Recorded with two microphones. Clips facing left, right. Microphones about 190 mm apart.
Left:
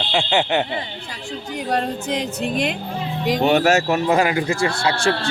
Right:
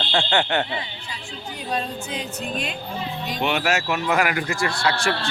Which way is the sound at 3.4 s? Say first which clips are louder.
Left 6 dB; 40° left (ahead or behind).